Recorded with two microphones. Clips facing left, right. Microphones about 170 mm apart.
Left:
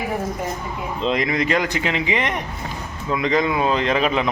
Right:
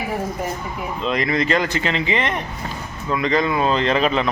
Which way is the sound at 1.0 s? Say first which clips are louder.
Even; 15° left (ahead or behind).